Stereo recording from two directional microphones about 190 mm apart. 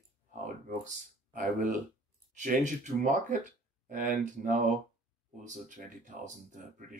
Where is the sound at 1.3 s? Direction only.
45° right (ahead or behind).